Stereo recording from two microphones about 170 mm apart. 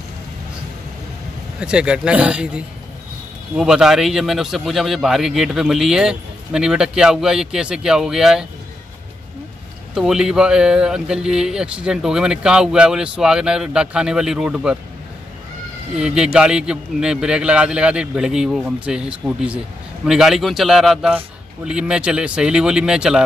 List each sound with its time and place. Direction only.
1.6 s a man's voice: 5° right (ahead or behind)
9.9 s a man's voice: 5° right (ahead or behind)
16.0 s a man's voice: 5° right (ahead or behind)